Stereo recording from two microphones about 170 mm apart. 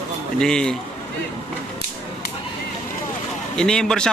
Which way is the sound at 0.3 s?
5° left (ahead or behind).